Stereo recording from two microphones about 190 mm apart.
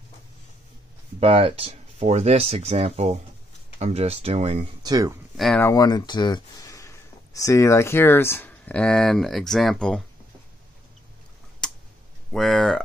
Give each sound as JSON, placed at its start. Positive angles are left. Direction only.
{"t": 1.2, "sound": "speech", "side_deg": -30}
{"t": 4.8, "sound": "speech", "side_deg": -20}
{"t": 5.4, "sound": "speech", "side_deg": 5}
{"t": 5.7, "sound": "speech", "side_deg": 20}
{"t": 11.6, "sound": "tick", "side_deg": 5}
{"t": 12.3, "sound": "speech", "side_deg": 0}